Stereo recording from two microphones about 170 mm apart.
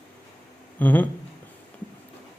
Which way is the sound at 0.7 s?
10° left (ahead or behind).